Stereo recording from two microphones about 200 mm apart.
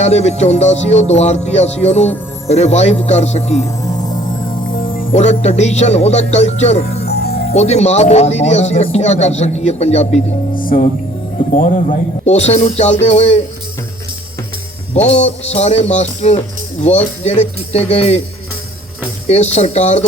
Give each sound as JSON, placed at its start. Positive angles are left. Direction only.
{"t": 0.0, "sound": "speech", "side_deg": 35}
{"t": 3.8, "sound": "music", "side_deg": 20}
{"t": 5.1, "sound": "speech", "side_deg": 30}
{"t": 7.1, "sound": "music", "side_deg": 50}
{"t": 7.5, "sound": "speech", "side_deg": 35}
{"t": 11.5, "sound": "speech", "side_deg": 40}
{"t": 15.0, "sound": "speech", "side_deg": 35}
{"t": 19.3, "sound": "speech", "side_deg": 35}